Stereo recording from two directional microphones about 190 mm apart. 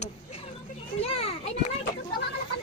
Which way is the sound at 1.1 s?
30° left (ahead or behind).